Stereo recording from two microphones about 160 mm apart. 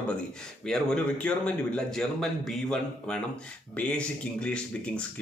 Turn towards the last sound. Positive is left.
turn(degrees=5)  # may be behind; listen again after turning